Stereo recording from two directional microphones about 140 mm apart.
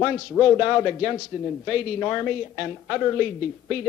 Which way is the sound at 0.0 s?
10° left (ahead or behind).